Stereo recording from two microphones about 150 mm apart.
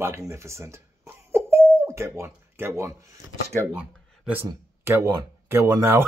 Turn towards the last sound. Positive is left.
turn(degrees=-15)  # may be behind; listen again after turning